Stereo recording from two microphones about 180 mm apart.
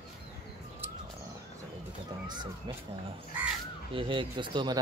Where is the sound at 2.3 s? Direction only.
25° right (ahead or behind).